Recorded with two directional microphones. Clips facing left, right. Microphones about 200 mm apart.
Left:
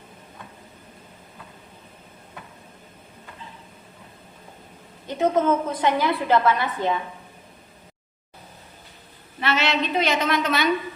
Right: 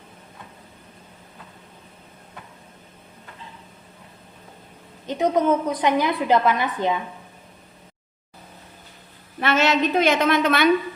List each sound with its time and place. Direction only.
5.0 s a woman's voice: 15° right (ahead or behind)
9.4 s a woman's voice: 50° right (ahead or behind)